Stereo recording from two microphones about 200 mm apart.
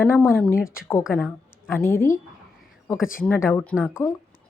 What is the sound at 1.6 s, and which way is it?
Speech, 10° left (ahead or behind).